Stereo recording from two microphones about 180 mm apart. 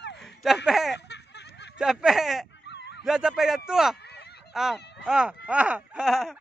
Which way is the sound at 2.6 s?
70° left (ahead or behind).